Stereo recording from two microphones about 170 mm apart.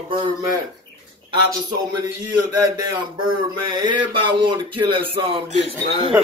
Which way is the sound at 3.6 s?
25° right (ahead or behind).